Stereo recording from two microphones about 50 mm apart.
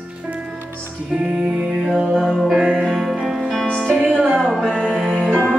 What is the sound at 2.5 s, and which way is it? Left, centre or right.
Music, centre.